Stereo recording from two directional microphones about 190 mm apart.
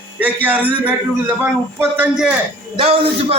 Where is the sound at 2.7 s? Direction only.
30° right (ahead or behind).